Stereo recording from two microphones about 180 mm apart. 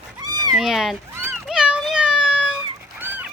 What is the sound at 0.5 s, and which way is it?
Cat, centre (ahead or behind).